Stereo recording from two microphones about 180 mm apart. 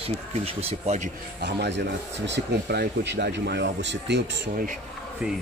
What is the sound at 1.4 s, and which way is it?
Speech, 70° right (ahead or behind).